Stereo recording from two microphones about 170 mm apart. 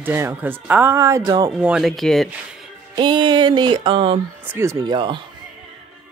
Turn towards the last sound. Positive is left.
turn(degrees=-30)  # may be behind; listen again after turning